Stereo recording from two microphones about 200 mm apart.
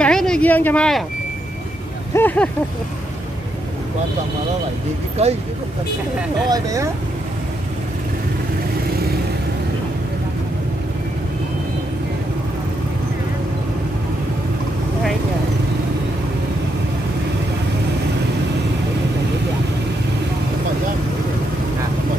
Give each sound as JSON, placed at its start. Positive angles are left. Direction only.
{"t": 0.0, "sound": "speech", "side_deg": 5}
{"t": 2.1, "sound": "speech", "side_deg": 10}
{"t": 5.2, "sound": "speech", "side_deg": -30}
{"t": 6.5, "sound": "speech", "side_deg": -15}